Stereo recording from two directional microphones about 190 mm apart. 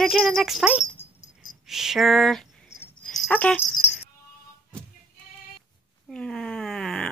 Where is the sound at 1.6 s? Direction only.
Centre (ahead or behind).